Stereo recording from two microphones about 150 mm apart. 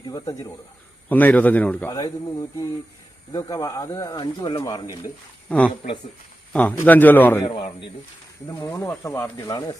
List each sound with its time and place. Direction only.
0.0 s speech: 25° left (ahead or behind)
1.0 s a man's voice: 10° left (ahead or behind)
1.9 s speech: 20° left (ahead or behind)
3.3 s speech: 25° left (ahead or behind)
5.5 s a man's voice: 10° left (ahead or behind)
7.4 s a man's voice: 35° left (ahead or behind)
8.4 s speech: 25° left (ahead or behind)